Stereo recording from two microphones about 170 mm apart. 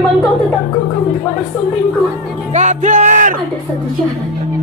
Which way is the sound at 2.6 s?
45° right (ahead or behind).